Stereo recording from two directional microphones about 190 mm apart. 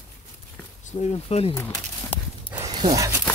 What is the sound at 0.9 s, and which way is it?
Speech, 30° left (ahead or behind).